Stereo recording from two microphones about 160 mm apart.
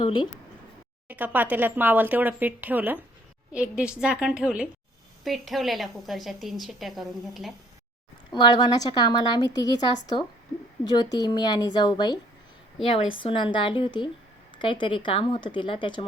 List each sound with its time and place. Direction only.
1.0 s a woman's voice: 10° right (ahead or behind)
8.3 s a woman's voice: 25° left (ahead or behind)